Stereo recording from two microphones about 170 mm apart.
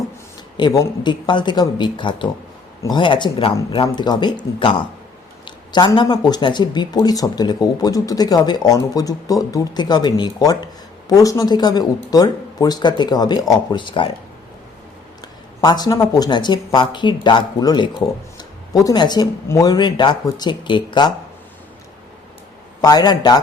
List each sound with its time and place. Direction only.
0.5 s speech: 20° left (ahead or behind)
15.6 s speech: 25° left (ahead or behind)
22.8 s speech: 25° left (ahead or behind)